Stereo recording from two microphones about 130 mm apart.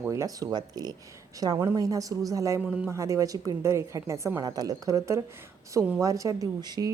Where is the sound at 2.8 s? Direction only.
25° right (ahead or behind).